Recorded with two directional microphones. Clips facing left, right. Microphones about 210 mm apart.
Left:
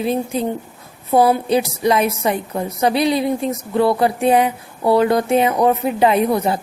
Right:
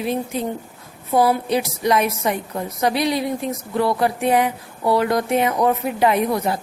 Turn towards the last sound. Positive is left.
turn(degrees=25)  # may be behind; listen again after turning